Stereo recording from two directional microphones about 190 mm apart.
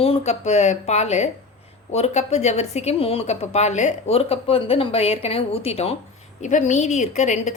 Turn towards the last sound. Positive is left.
turn(degrees=40)  # may be behind; listen again after turning